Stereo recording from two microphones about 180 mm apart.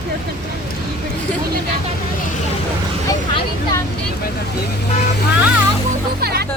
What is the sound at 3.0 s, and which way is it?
Speech, 20° left (ahead or behind).